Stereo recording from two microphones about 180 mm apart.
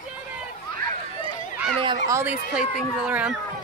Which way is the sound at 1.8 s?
15° right (ahead or behind).